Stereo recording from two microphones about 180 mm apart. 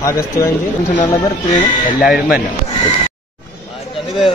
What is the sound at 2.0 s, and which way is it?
Speech, 5° right (ahead or behind).